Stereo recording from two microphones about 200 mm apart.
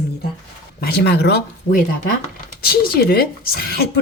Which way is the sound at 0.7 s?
50° left (ahead or behind).